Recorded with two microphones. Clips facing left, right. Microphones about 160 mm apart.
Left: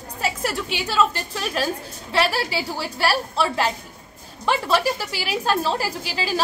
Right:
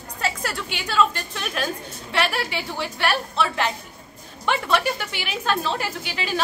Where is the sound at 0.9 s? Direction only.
30° left (ahead or behind).